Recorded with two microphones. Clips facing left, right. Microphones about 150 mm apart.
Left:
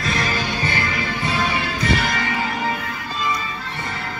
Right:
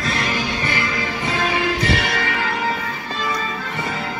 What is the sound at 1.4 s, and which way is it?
Music, 90° right.